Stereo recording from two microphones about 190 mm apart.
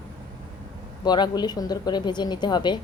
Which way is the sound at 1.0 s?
20° left (ahead or behind).